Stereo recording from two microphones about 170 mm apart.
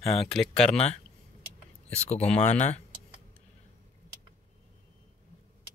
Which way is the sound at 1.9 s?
40° left (ahead or behind).